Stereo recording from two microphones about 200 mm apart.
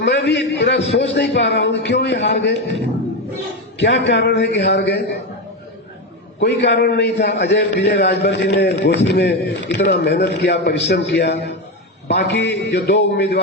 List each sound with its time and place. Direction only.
0.0 s a man's voice: 60° left (ahead or behind)
3.8 s a man's voice: 60° left (ahead or behind)
6.4 s a man's voice: 55° left (ahead or behind)